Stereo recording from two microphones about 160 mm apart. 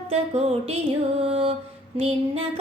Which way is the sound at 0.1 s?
40° right (ahead or behind).